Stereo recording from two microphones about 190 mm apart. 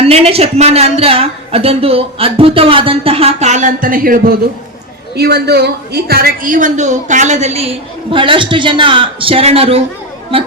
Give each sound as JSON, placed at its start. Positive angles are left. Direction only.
{"t": 0.0, "sound": "a woman's voice", "side_deg": -30}
{"t": 5.1, "sound": "a woman's voice", "side_deg": -60}